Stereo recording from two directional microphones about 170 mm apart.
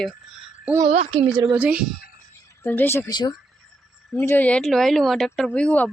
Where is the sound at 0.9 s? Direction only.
45° right (ahead or behind).